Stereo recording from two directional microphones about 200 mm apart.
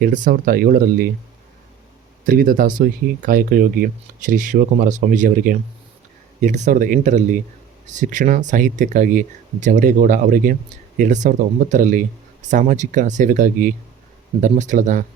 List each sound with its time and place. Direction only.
0.0 s speech: 40° right (ahead or behind)
2.2 s speech: 45° right (ahead or behind)